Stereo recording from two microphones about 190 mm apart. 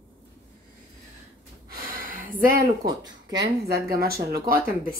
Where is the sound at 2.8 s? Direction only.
20° right (ahead or behind).